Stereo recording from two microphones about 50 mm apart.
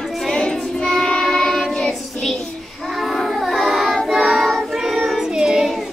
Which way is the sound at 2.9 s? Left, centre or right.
Centre.